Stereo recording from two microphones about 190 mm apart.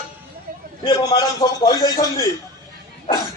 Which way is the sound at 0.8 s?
20° left (ahead or behind).